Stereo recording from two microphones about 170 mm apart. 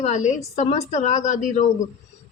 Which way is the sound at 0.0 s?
45° left (ahead or behind).